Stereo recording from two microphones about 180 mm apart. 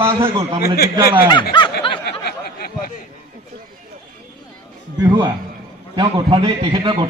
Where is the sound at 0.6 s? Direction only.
60° left (ahead or behind).